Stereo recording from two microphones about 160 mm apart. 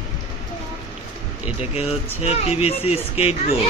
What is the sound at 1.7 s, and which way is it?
Speech, 40° left (ahead or behind).